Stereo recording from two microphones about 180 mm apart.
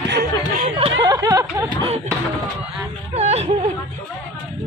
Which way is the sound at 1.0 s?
20° right (ahead or behind).